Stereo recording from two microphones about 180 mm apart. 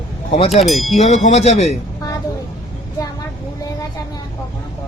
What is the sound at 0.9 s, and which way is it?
Speech, 40° left (ahead or behind).